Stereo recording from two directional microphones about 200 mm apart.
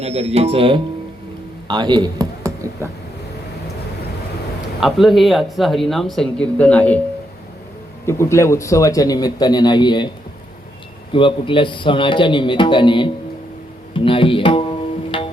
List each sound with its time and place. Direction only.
0.0 s speech: 30° right (ahead or behind)
4.8 s speech: centre (ahead or behind)
8.0 s a man's voice: 15° left (ahead or behind)
11.1 s speech: 25° left (ahead or behind)